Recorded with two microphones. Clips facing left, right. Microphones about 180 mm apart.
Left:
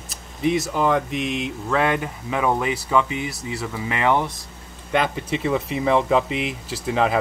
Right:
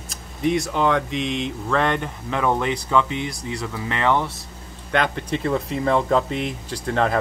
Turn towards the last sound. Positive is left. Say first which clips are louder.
# left 1 dB
turn(degrees=5)  # may be behind; listen again after turning